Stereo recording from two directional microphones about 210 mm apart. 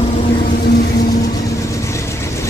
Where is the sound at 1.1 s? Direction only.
15° left (ahead or behind).